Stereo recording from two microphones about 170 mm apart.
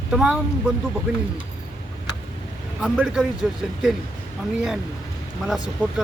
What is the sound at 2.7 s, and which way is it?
Speech, 5° right (ahead or behind).